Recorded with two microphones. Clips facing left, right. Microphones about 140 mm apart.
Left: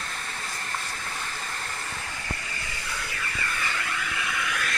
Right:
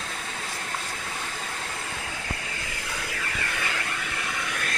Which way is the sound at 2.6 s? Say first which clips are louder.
Right 1 dB; 90° right.